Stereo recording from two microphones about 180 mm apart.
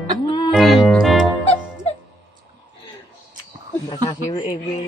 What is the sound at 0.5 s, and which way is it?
Music, centre (ahead or behind).